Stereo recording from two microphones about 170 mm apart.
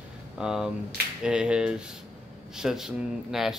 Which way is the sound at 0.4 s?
5° right (ahead or behind).